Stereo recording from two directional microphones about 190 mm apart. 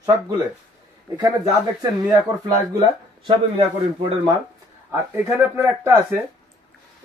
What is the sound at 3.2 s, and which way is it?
Speech, 25° right (ahead or behind).